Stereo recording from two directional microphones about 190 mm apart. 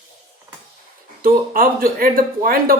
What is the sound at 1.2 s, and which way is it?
Speech, 50° right (ahead or behind).